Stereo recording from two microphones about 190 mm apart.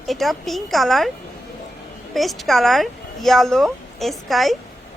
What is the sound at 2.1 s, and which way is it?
A woman's voice, centre (ahead or behind).